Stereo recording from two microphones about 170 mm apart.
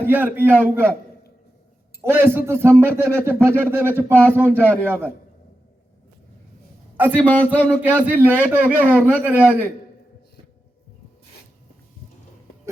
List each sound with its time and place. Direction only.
0.0 s a man's voice: 10° right (ahead or behind)
2.0 s a man's voice: 15° right (ahead or behind)
6.9 s a man's voice: 10° right (ahead or behind)
7.2 s speech: 10° left (ahead or behind)
7.8 s a man's voice: 10° right (ahead or behind)